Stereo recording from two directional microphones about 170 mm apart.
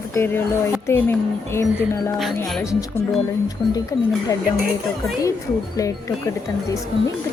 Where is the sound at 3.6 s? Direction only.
25° left (ahead or behind).